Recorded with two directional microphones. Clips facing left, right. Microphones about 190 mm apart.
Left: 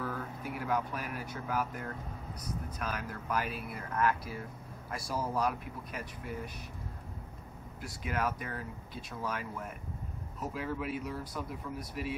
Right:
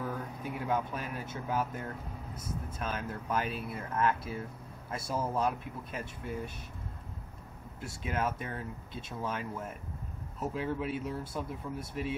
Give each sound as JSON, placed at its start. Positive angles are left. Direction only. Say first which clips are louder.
{"t": 0.0, "sound": "speech", "louder": "right 1 dB", "side_deg": -20}
{"t": 7.8, "sound": "speech", "louder": "right 1 dB", "side_deg": -25}